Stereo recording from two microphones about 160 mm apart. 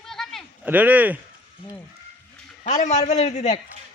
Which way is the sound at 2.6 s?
45° left (ahead or behind).